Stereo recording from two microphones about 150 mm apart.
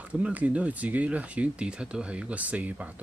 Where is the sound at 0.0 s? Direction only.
10° right (ahead or behind).